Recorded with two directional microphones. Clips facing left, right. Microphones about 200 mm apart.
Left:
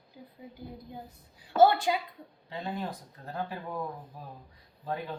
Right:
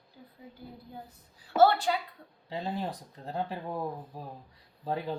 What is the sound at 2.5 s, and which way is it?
Speech, 35° right (ahead or behind).